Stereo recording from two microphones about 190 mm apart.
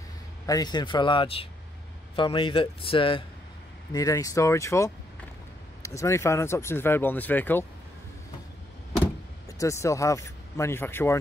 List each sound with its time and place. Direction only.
0.5 s a man's voice: 20° left (ahead or behind)
9.6 s speech: 15° left (ahead or behind)